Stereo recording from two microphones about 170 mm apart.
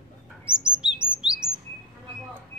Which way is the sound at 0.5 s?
5° right (ahead or behind).